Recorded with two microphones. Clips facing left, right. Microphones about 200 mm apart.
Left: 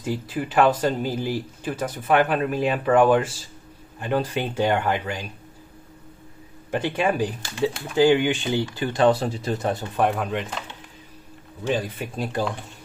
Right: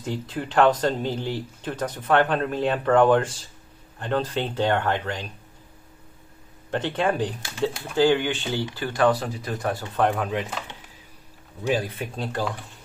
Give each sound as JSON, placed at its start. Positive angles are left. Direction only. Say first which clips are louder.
{"t": 0.0, "sound": "speech", "louder": "left 2 dB", "side_deg": 5}
{"t": 6.7, "sound": "speech", "louder": "left 1 dB", "side_deg": 10}
{"t": 9.9, "sound": "speech", "louder": "right 1 dB", "side_deg": 5}
{"t": 11.6, "sound": "speech", "louder": "even", "side_deg": -5}